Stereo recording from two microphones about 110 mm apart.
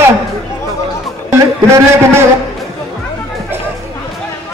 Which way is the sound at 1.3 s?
25° right (ahead or behind).